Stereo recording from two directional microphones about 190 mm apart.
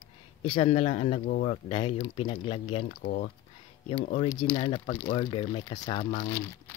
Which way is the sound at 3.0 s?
55° left (ahead or behind).